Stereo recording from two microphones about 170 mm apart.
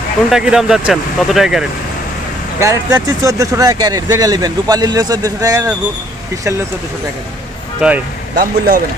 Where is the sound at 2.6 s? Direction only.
20° right (ahead or behind).